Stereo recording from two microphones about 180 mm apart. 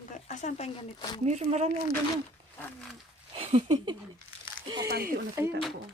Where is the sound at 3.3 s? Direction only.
30° right (ahead or behind).